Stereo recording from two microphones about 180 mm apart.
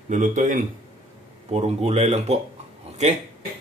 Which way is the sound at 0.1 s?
45° right (ahead or behind).